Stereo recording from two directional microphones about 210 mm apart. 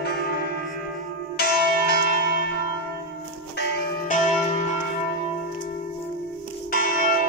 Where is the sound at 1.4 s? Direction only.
50° left (ahead or behind).